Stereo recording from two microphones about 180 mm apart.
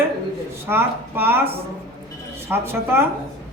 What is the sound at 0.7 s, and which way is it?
Speech, 10° right (ahead or behind).